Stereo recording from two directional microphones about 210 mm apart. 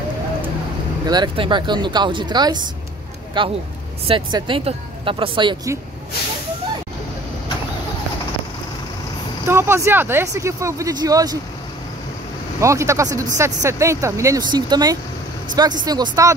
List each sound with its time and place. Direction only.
1.0 s speech: 20° right (ahead or behind)
9.5 s speech: 10° right (ahead or behind)
12.5 s speech: 15° right (ahead or behind)